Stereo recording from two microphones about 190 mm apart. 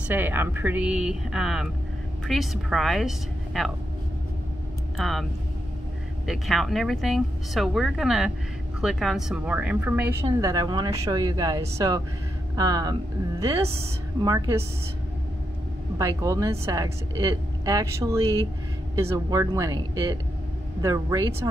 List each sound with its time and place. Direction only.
0.1 s a woman's voice: 10° right (ahead or behind)
4.9 s speech: centre (ahead or behind)
6.2 s speech: centre (ahead or behind)
10.2 s a woman's voice: 20° right (ahead or behind)
16.0 s a woman's voice: 15° right (ahead or behind)